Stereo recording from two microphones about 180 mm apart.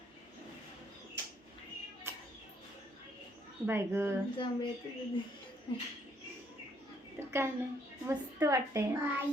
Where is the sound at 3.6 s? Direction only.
15° right (ahead or behind).